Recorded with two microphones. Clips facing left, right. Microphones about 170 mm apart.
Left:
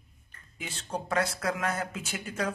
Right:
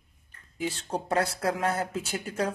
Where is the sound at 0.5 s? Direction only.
35° right (ahead or behind).